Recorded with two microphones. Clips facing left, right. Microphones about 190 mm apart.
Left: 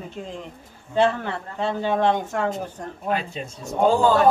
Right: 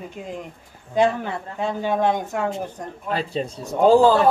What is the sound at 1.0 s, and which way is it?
A man's voice, 10° right (ahead or behind).